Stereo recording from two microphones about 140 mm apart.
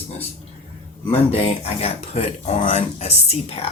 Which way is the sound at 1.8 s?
50° left (ahead or behind).